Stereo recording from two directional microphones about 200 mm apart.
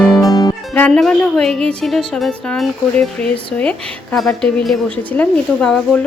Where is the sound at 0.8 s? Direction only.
5° left (ahead or behind).